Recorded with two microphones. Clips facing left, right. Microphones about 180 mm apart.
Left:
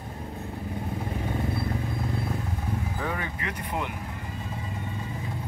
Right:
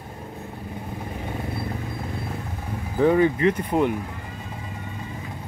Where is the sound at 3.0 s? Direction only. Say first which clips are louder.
Right 14 dB; 30° right (ahead or behind).